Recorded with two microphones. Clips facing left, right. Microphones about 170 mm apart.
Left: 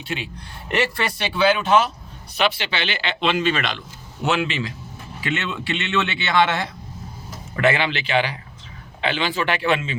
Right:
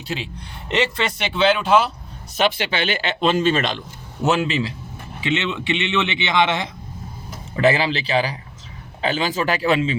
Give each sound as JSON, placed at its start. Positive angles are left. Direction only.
{"t": 0.0, "sound": "a man's voice", "side_deg": -30}
{"t": 0.7, "sound": "speech", "side_deg": -20}
{"t": 2.3, "sound": "speech", "side_deg": -45}
{"t": 5.2, "sound": "a man's voice", "side_deg": -20}
{"t": 7.6, "sound": "a man's voice", "side_deg": -35}